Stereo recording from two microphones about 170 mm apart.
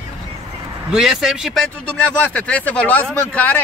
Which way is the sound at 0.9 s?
Centre (ahead or behind).